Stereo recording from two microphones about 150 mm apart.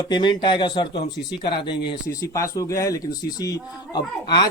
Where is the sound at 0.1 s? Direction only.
30° left (ahead or behind).